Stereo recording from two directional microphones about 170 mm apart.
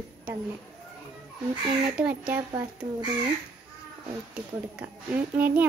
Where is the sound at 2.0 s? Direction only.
5° right (ahead or behind).